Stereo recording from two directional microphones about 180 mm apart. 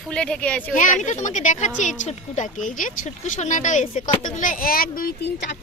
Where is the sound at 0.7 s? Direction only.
45° left (ahead or behind).